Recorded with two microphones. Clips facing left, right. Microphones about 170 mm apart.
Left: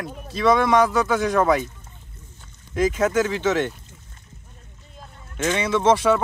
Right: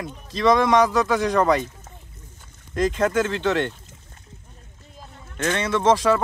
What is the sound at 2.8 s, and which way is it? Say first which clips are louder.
Speech: left 1 dB; 5° left (ahead or behind).